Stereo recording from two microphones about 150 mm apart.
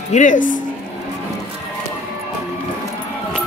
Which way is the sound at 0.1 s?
55° left (ahead or behind).